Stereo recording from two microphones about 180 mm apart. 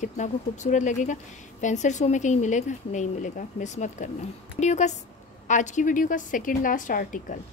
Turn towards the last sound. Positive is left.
turn(degrees=50)  # may be behind; listen again after turning